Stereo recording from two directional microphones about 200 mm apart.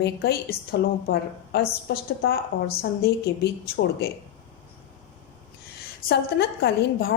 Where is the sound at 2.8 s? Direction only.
55° left (ahead or behind).